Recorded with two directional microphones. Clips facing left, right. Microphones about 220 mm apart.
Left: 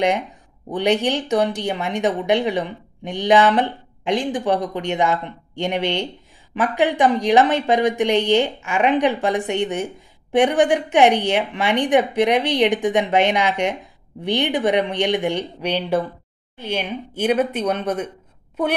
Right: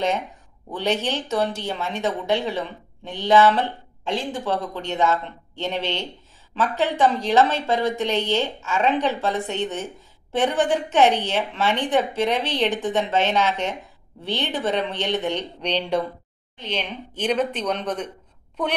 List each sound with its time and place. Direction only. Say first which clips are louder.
0.7 s speech: left 5 dB; 15° left (ahead or behind)